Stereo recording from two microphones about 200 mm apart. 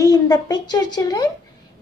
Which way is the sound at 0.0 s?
20° left (ahead or behind).